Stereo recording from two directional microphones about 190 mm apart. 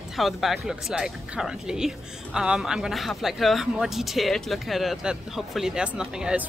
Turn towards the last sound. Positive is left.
turn(degrees=-5)  # may be behind; listen again after turning